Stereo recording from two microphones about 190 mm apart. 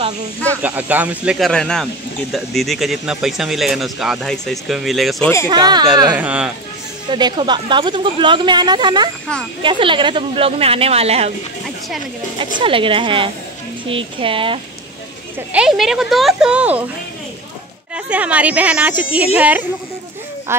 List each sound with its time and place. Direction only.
0.5 s speech: 10° right (ahead or behind)
5.5 s a woman's voice: 20° right (ahead or behind)
6.1 s speech: 5° right (ahead or behind)
7.1 s a woman's voice: 25° right (ahead or behind)
12.5 s a woman's voice: 25° right (ahead or behind)
15.5 s speech: 5° right (ahead or behind)
17.9 s speech: 5° right (ahead or behind)